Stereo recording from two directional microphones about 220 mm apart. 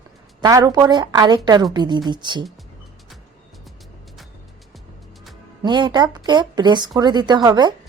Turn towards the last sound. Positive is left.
turn(degrees=-20)  # may be behind; listen again after turning